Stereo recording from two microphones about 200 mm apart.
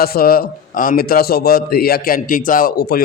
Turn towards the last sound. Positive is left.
turn(degrees=50)  # may be behind; listen again after turning